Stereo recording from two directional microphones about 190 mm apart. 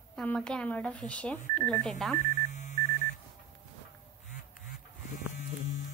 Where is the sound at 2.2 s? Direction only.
40° left (ahead or behind).